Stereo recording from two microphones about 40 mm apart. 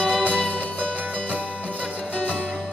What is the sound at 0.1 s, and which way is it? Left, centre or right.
Music, right.